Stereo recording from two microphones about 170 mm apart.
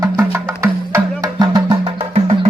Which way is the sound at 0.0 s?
15° right (ahead or behind).